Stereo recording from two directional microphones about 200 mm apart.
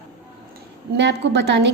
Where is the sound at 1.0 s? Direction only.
60° right (ahead or behind).